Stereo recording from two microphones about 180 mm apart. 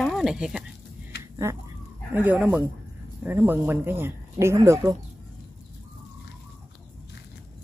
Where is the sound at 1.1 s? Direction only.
65° left (ahead or behind).